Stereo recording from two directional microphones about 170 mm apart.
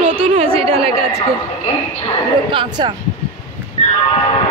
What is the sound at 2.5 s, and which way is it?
Speech, 30° right (ahead or behind).